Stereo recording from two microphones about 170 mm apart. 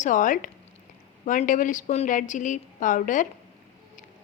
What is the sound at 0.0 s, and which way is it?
A woman's voice, 50° left (ahead or behind).